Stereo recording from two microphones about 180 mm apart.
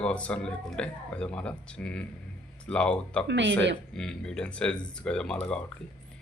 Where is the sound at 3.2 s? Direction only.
80° right.